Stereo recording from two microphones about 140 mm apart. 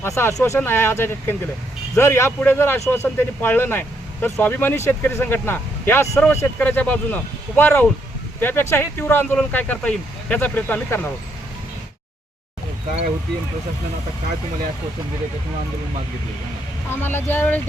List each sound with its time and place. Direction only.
0.0 s speech: 15° left (ahead or behind)
16.9 s speech: 15° left (ahead or behind)